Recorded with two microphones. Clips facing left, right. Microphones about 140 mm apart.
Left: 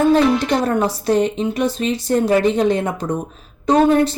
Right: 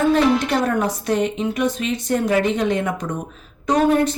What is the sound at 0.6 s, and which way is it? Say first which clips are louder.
Speech: left 2 dB; 30° left (ahead or behind).